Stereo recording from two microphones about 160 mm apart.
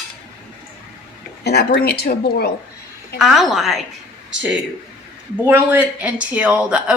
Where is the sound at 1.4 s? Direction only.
90° left.